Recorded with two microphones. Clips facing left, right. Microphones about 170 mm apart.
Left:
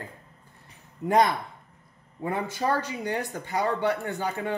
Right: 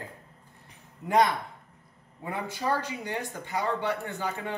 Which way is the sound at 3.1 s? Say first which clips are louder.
Left 5 dB; 40° left (ahead or behind).